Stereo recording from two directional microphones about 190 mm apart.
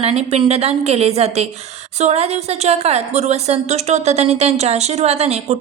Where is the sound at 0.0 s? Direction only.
30° right (ahead or behind).